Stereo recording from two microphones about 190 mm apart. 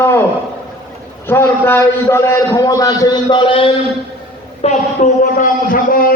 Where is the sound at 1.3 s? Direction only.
10° left (ahead or behind); by 3.7 s 25° left (ahead or behind).